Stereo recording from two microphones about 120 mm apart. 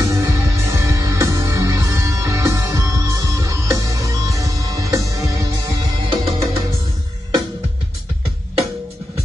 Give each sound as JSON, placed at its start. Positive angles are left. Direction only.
{"t": 0.0, "sound": "music", "side_deg": -25}
{"t": 6.0, "sound": "music", "side_deg": -45}